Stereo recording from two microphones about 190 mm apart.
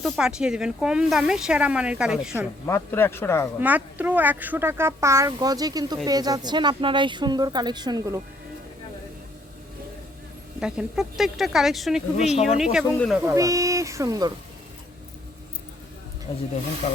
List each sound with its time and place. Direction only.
0.0 s speech: 5° right (ahead or behind)
2.6 s speech: 15° left (ahead or behind)
3.6 s speech: 10° right (ahead or behind)
10.6 s speech: 5° right (ahead or behind)
12.1 s speech: 35° left (ahead or behind)
13.0 s speech: centre (ahead or behind)
13.2 s speech: 15° right (ahead or behind)
16.3 s speech: 30° left (ahead or behind)